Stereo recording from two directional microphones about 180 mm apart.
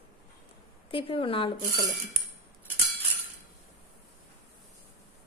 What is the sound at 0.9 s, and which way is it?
Speech, 30° left (ahead or behind).